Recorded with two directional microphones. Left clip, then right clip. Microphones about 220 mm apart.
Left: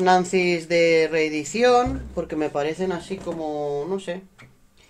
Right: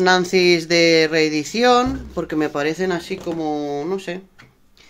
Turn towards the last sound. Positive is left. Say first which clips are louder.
# right 2 dB
turn(degrees=-35)  # may be behind; listen again after turning